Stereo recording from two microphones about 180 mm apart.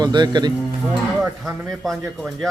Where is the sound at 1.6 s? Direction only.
Centre (ahead or behind).